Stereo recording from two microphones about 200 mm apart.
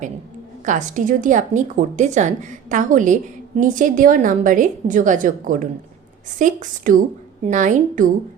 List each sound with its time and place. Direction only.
0.6 s a woman's voice: 40° right (ahead or behind)